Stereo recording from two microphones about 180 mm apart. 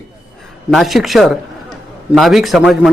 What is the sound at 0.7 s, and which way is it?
A man's voice, centre (ahead or behind).